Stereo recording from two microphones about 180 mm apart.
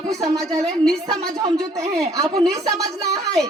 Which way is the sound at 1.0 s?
25° right (ahead or behind).